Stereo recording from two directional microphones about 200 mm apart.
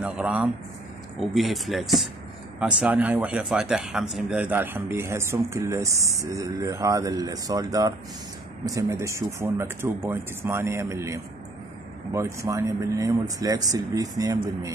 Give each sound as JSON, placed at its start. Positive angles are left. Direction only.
{"t": 0.0, "sound": "speech", "side_deg": -5}